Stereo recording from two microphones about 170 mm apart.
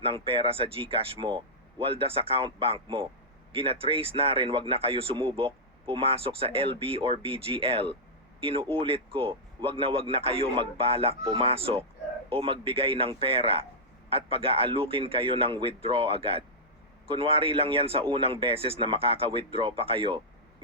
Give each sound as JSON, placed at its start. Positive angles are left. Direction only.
{"t": 0.0, "sound": "a man's voice", "side_deg": -35}